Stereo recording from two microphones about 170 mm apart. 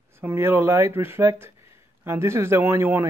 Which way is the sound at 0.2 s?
15° right (ahead or behind).